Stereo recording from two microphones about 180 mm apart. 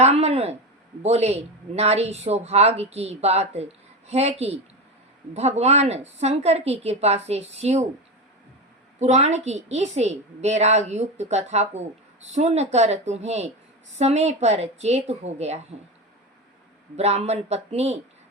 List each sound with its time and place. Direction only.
0.0 s a sound: 35° right (ahead or behind)
1.0 s a woman's voice: 35° right (ahead or behind)
9.0 s a woman's voice: 40° right (ahead or behind)
17.0 s a woman's voice: 35° right (ahead or behind)